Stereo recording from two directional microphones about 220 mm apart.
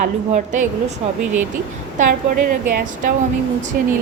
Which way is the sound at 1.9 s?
40° right (ahead or behind).